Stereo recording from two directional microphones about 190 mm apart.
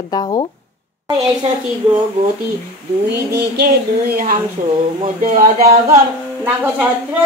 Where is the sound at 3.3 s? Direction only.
55° right (ahead or behind).